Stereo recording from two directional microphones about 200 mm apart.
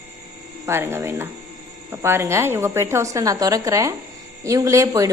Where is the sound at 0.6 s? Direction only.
10° right (ahead or behind).